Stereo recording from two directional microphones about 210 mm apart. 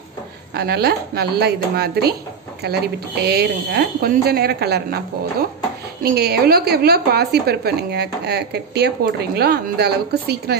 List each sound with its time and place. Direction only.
0.6 s a woman's voice: 50° right (ahead or behind)
6.0 s a woman's voice: 50° right (ahead or behind)